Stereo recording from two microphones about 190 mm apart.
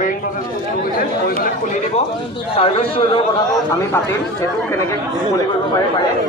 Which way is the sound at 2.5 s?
30° left (ahead or behind).